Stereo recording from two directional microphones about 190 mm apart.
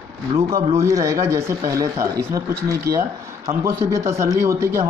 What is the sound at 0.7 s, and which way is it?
Speech, 15° right (ahead or behind).